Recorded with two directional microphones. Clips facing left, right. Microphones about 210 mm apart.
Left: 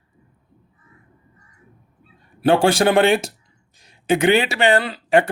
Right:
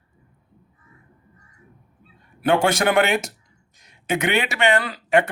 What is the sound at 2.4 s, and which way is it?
Speech, 30° left (ahead or behind).